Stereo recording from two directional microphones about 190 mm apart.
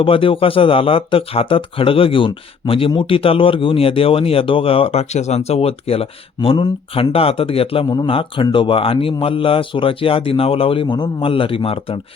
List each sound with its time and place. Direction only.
0.0 s speech: 25° left (ahead or behind)